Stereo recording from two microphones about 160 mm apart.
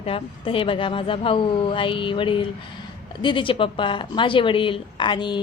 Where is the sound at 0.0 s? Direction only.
35° left (ahead or behind).